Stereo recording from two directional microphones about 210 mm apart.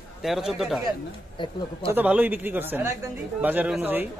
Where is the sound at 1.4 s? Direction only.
20° left (ahead or behind).